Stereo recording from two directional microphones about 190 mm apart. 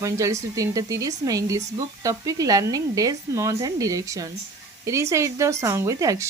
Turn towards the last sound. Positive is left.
turn(degrees=-15)  # may be behind; listen again after turning